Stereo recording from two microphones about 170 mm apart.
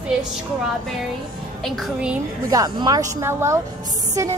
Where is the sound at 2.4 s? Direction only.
20° right (ahead or behind).